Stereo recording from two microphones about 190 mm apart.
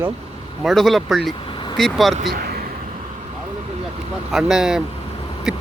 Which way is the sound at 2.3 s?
50° right (ahead or behind).